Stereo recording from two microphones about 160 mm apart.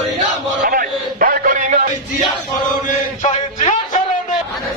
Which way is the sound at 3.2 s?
50° left (ahead or behind).